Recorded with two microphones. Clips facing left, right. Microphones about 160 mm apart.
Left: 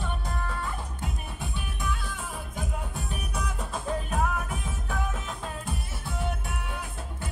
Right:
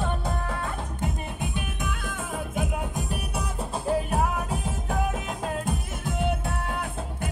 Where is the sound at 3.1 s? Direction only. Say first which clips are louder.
Right 3 dB; 35° right (ahead or behind); by 7.3 s 60° right (ahead or behind).